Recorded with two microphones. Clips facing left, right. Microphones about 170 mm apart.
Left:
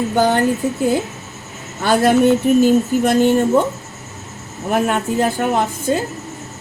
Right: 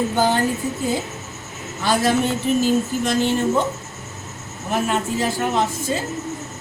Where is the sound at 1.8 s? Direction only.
55° left (ahead or behind).